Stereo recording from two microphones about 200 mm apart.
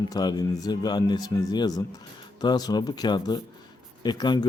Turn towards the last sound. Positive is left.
turn(degrees=20)  # may be behind; listen again after turning